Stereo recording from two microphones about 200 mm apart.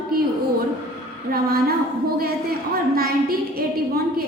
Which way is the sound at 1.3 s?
50° right (ahead or behind).